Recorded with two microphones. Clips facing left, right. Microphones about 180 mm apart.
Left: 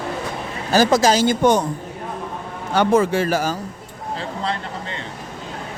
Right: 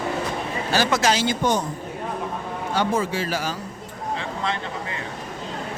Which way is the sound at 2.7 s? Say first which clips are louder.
Left 7 dB; 60° left (ahead or behind).